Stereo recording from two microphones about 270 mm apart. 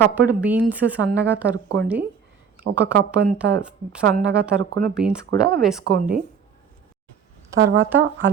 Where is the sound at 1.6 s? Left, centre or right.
Right.